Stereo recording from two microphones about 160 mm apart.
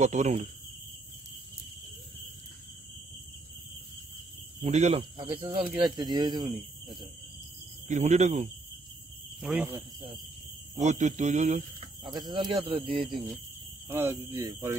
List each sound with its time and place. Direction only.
0.0 s speech: 45° right (ahead or behind)
4.6 s speech: 45° right (ahead or behind); by 7.1 s 30° right (ahead or behind)
7.9 s speech: 45° right (ahead or behind)
9.4 s speech: 10° right (ahead or behind)
10.8 s speech: 45° right (ahead or behind)
12.0 s speech: 25° right (ahead or behind)
12.9 s speech: centre (ahead or behind)
13.8 s speech: 15° right (ahead or behind)